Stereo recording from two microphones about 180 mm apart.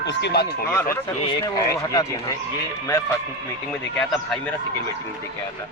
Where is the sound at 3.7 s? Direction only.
5° left (ahead or behind).